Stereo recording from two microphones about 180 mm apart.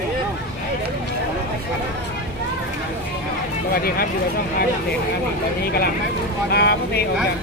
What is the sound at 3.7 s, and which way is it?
Speech, 55° left (ahead or behind).